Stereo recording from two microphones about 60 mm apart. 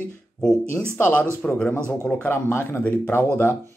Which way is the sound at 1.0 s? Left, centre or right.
Left.